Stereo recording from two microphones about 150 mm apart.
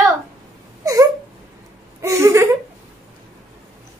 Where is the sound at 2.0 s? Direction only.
20° right (ahead or behind).